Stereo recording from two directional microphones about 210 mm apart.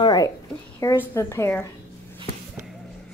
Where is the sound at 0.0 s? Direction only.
20° left (ahead or behind).